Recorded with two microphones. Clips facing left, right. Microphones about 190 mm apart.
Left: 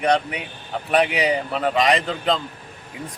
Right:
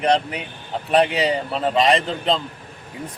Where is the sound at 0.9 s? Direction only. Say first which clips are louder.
Right 1 dB; 30° right (ahead or behind).